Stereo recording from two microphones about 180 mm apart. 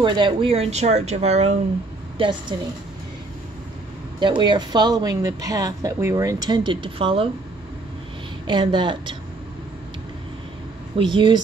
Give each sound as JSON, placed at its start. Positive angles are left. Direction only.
{"t": 0.0, "sound": "a woman's voice", "side_deg": -25}
{"t": 2.1, "sound": "speech", "side_deg": -25}
{"t": 4.2, "sound": "speech", "side_deg": -25}
{"t": 8.5, "sound": "speech", "side_deg": -25}
{"t": 11.0, "sound": "speech", "side_deg": -25}